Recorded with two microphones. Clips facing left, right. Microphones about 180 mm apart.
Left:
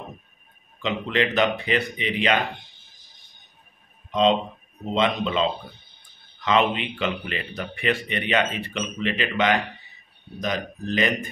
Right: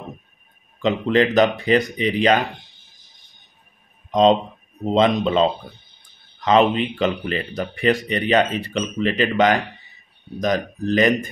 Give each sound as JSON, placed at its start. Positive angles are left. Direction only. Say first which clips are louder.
{"t": 0.8, "sound": "speech", "louder": "right 7 dB", "side_deg": -40}
{"t": 4.1, "sound": "speech", "louder": "right 5 dB", "side_deg": -40}